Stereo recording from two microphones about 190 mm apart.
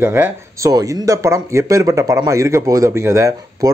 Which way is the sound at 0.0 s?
10° right (ahead or behind).